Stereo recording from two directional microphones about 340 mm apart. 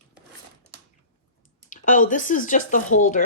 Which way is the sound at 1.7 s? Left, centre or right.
Left.